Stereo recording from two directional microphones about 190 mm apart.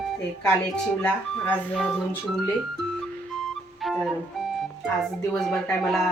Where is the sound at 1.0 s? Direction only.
5° left (ahead or behind).